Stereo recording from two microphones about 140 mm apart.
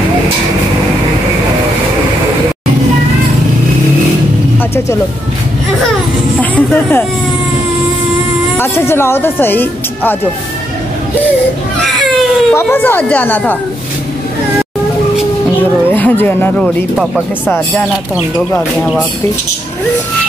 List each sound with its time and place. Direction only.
6.5 s speech: 15° left (ahead or behind)
8.5 s speech: 15° left (ahead or behind)
11.8 s baby cry: centre (ahead or behind)
12.5 s speech: 15° left (ahead or behind)
15.9 s speech: 15° left (ahead or behind)
16.6 s speech: 5° right (ahead or behind)